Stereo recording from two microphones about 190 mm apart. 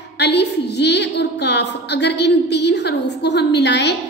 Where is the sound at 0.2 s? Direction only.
60° left (ahead or behind).